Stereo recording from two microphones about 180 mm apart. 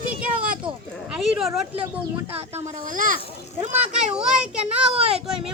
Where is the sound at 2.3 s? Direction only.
40° right (ahead or behind).